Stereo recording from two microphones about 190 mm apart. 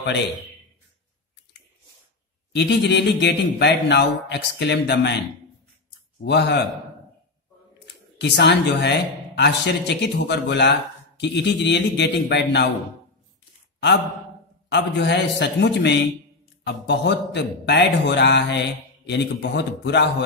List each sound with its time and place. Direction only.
2.5 s speech: 65° left (ahead or behind)
6.2 s speech: 65° left (ahead or behind)
7.8 s speech: 65° left (ahead or behind)
14.7 s speech: 65° left (ahead or behind)